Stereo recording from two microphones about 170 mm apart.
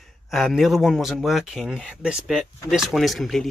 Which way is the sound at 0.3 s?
Centre (ahead or behind).